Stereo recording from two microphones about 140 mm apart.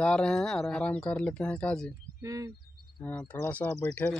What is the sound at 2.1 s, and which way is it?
Speech, 25° right (ahead or behind).